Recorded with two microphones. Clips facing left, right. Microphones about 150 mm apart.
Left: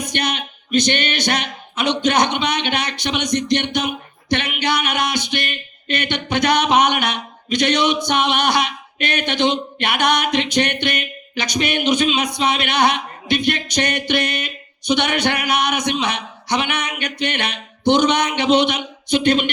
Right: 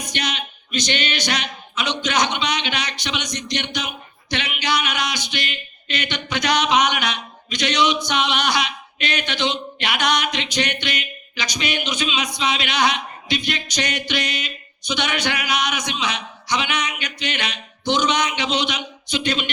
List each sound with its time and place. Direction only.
0.0 s speech: 55° left (ahead or behind)